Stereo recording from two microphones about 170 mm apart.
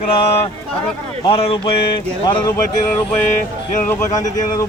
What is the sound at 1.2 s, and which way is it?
Speech, 30° left (ahead or behind).